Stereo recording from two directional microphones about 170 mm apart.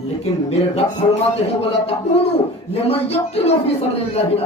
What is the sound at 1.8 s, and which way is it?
A man's voice, 35° left (ahead or behind).